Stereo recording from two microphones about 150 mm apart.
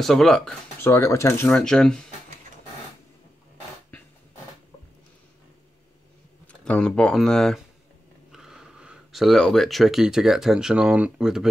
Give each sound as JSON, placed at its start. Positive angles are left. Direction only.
{"t": 0.0, "sound": "speech", "side_deg": 0}
{"t": 0.8, "sound": "speech", "side_deg": 20}
{"t": 1.5, "sound": "speech", "side_deg": 5}
{"t": 6.4, "sound": "speech", "side_deg": 5}